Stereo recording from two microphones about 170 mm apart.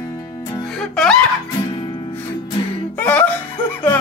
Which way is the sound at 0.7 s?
5° left (ahead or behind).